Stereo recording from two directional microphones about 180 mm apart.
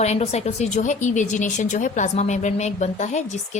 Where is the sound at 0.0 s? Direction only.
35° left (ahead or behind).